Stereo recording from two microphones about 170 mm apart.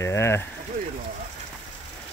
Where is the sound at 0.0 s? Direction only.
15° left (ahead or behind).